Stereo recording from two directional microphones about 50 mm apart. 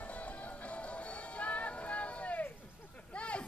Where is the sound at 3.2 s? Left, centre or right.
Left.